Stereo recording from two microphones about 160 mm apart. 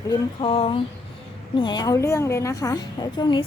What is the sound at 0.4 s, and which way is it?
A woman's voice, 35° left (ahead or behind).